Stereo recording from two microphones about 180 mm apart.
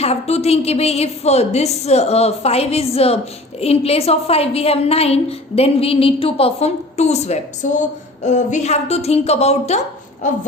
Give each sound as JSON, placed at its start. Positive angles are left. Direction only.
{"t": 0.0, "sound": "a woman's voice", "side_deg": 35}